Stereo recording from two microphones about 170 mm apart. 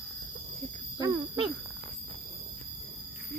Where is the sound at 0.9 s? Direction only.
25° right (ahead or behind).